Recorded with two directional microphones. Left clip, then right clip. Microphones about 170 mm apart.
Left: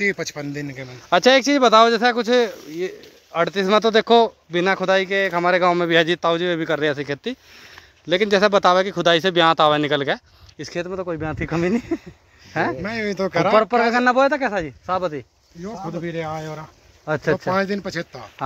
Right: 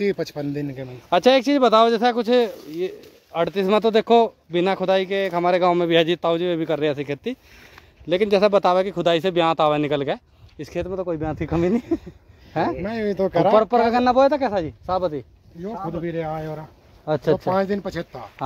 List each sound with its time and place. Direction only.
0.0 s speech: 55° right (ahead or behind)
0.8 s speech: 5° right (ahead or behind)
12.8 s speech: 35° right (ahead or behind)
13.7 s speech: 5° right (ahead or behind)
15.6 s speech: 35° right (ahead or behind)
17.0 s speech: 5° right (ahead or behind)
17.5 s speech: 20° right (ahead or behind)